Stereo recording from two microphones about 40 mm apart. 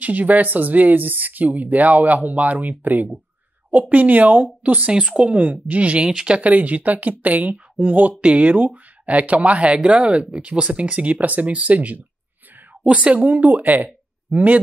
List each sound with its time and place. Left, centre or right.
0.0 s speech: right
4.6 s speech: right
6.5 s speech: right
13.8 s a sound: right